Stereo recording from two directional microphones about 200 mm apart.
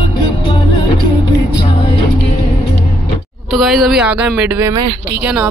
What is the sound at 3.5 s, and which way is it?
Speech, centre (ahead or behind).